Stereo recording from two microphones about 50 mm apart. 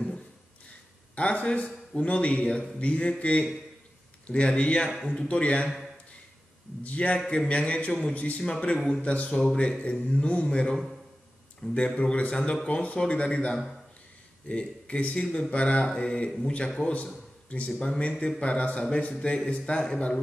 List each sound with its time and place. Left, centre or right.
1.1 s a man's voice: left
6.8 s a man's voice: left; by 9.0 s centre
9.0 s a man's voice: left